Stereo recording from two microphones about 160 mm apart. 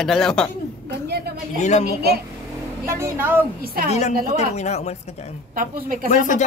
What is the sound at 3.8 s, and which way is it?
A woman's voice, 45° left (ahead or behind).